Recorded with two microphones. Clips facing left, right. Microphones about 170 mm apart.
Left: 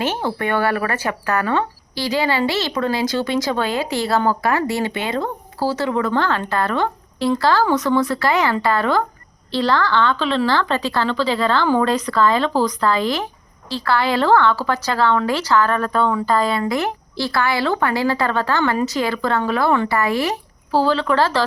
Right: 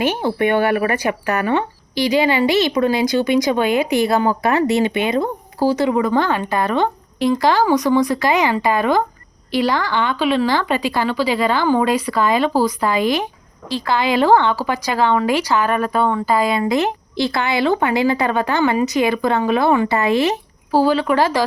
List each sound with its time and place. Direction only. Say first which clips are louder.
0.0 s speech: right 4 dB; 15° right (ahead or behind)